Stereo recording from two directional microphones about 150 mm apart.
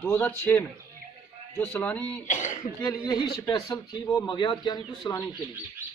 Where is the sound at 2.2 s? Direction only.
55° left (ahead or behind).